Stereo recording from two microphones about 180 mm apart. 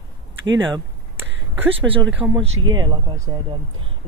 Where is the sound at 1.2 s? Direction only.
10° right (ahead or behind).